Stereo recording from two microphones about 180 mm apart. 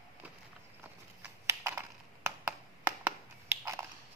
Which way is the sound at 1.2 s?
15° right (ahead or behind).